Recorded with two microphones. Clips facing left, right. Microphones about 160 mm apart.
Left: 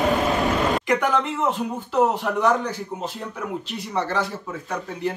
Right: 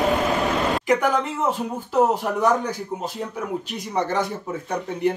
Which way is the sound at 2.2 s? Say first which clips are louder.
Even; 10° right (ahead or behind).